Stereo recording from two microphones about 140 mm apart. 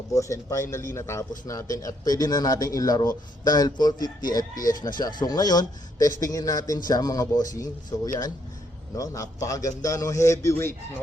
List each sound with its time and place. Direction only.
0.1 s speech: 25° left (ahead or behind)
4.5 s speech: 75° left (ahead or behind)
4.9 s speech: 25° left (ahead or behind)